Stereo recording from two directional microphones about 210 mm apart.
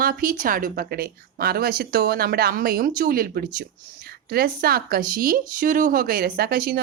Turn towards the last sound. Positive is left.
turn(degrees=-45)  # may be behind; listen again after turning